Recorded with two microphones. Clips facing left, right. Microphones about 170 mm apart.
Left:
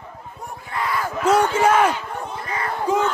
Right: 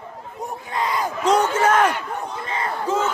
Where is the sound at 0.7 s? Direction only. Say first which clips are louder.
Right 1 dB; 20° right (ahead or behind).